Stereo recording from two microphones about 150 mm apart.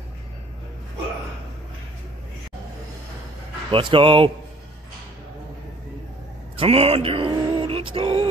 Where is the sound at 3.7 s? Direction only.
35° right (ahead or behind).